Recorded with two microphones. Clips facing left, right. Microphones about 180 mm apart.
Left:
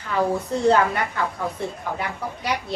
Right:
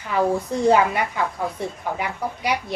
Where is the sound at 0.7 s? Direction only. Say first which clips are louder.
Right 2 dB; 10° right (ahead or behind).